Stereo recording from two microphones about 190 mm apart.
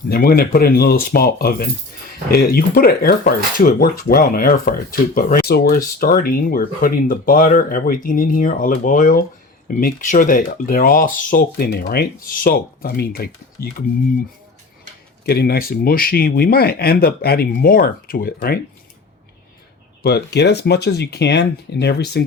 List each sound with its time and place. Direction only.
0.1 s speech: 50° left (ahead or behind)
15.3 s speech: 55° left (ahead or behind)
20.0 s speech: 60° left (ahead or behind)